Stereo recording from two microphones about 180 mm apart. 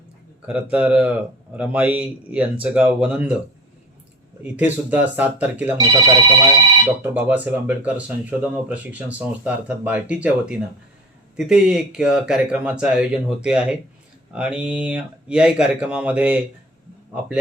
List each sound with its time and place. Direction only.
0.4 s speech: 5° right (ahead or behind)
4.4 s speech: 10° right (ahead or behind)
5.7 s speech: 20° right (ahead or behind)
7.0 s speech: 5° right (ahead or behind)